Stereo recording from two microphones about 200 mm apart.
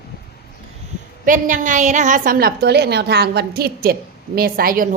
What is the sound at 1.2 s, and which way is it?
A woman's voice, 40° right (ahead or behind).